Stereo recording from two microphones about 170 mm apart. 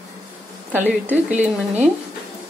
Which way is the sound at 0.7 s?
10° right (ahead or behind).